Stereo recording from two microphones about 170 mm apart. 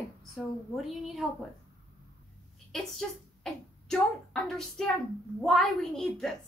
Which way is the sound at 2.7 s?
Centre (ahead or behind).